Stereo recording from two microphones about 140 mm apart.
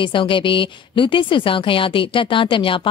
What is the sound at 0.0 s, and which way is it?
A woman's voice, 35° left (ahead or behind).